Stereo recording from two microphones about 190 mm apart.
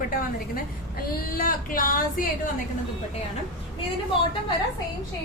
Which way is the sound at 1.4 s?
50° left (ahead or behind).